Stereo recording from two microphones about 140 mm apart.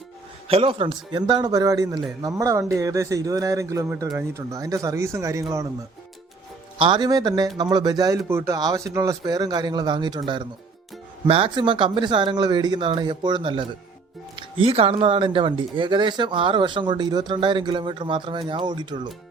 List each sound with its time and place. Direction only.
0.4 s a man's voice: 40° right (ahead or behind); by 5.6 s 25° right (ahead or behind)
6.7 s a man's voice: 35° right (ahead or behind)
11.3 s speech: 40° right (ahead or behind)